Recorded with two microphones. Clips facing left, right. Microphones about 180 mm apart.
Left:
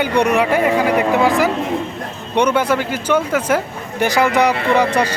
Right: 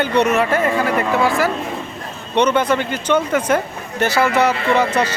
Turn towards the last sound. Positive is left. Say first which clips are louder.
# left 1 dB
turn(degrees=15)  # may be behind; listen again after turning